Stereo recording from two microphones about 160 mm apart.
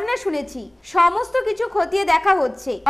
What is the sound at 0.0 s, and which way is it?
A woman's voice, centre (ahead or behind).